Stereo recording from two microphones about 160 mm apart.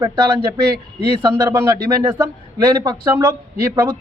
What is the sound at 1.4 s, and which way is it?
Speech, 15° right (ahead or behind).